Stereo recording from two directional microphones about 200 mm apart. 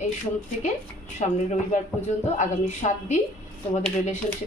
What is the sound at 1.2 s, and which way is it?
A woman's voice, 30° left (ahead or behind).